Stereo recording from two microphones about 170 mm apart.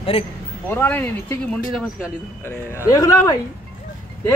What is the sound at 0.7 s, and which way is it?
Speech, 10° left (ahead or behind).